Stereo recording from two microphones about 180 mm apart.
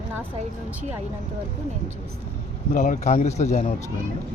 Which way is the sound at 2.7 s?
45° left (ahead or behind).